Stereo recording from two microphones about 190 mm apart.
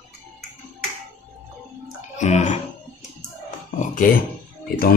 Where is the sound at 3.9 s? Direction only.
45° left (ahead or behind).